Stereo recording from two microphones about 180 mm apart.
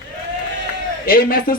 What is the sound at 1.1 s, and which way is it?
Speech, 55° left (ahead or behind).